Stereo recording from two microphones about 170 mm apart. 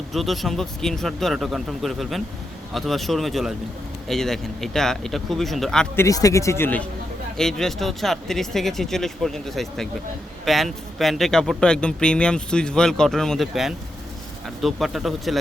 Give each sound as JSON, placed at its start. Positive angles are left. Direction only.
{"t": 0.1, "sound": "a man's voice", "side_deg": 0}
{"t": 6.0, "sound": "a man's voice", "side_deg": 20}